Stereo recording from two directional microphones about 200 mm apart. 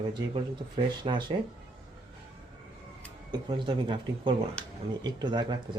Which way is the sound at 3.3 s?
25° right (ahead or behind).